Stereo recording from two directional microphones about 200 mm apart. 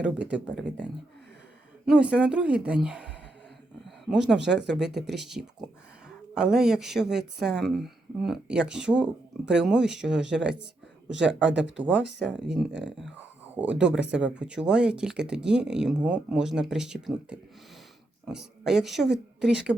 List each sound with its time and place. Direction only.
0.0 s speech: 5° right (ahead or behind)
1.9 s speech: 5° right (ahead or behind)
3.8 s a sound: 5° right (ahead or behind)
4.4 s speech: centre (ahead or behind)
11.9 s speech: 60° right (ahead or behind)
12.3 s speech: 5° right (ahead or behind)
13.9 s speech: 5° right (ahead or behind)